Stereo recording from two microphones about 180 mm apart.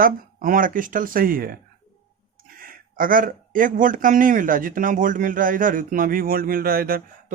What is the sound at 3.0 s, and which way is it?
Speech, 50° right (ahead or behind).